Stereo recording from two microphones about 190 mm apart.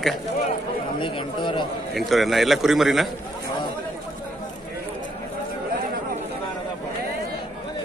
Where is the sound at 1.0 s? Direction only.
25° left (ahead or behind).